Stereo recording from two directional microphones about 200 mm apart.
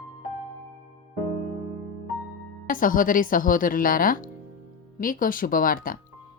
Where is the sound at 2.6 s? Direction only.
45° left (ahead or behind).